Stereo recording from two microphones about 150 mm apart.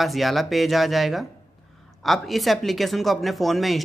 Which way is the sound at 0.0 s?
Centre (ahead or behind).